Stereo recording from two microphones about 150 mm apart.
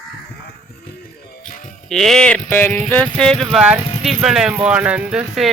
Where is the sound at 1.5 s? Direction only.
65° left (ahead or behind).